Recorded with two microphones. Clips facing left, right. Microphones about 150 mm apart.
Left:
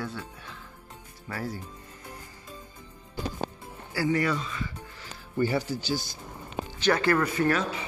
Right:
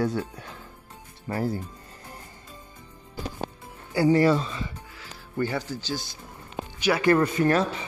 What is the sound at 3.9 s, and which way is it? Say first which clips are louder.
Speech: right 7 dB; 25° right (ahead or behind).